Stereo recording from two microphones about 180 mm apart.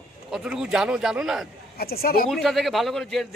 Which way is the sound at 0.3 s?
5° right (ahead or behind).